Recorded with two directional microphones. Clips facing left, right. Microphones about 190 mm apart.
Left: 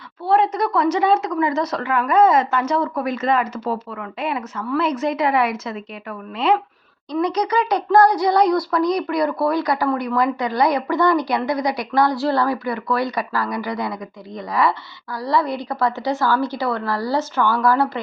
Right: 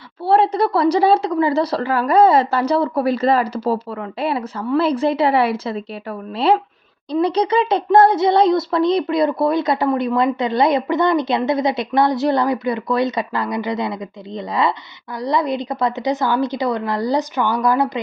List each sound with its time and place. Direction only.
0.3 s speech: 35° right (ahead or behind); by 18.0 s 15° right (ahead or behind)